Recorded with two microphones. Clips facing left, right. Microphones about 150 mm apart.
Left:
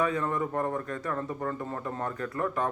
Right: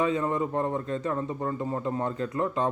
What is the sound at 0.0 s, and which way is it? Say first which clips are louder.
Speech: right 2 dB; 20° right (ahead or behind).